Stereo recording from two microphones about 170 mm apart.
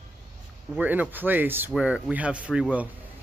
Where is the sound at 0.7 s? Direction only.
10° right (ahead or behind).